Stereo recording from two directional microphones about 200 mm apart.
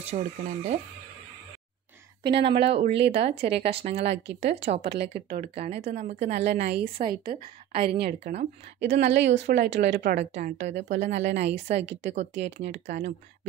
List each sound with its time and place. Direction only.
0.0 s speech: 35° right (ahead or behind)
2.4 s a woman's voice: 25° right (ahead or behind)
6.3 s a woman's voice: 55° right (ahead or behind)
7.2 s a woman's voice: 30° right (ahead or behind)
8.7 s a woman's voice: 60° right (ahead or behind)
9.8 s speech: 40° right (ahead or behind)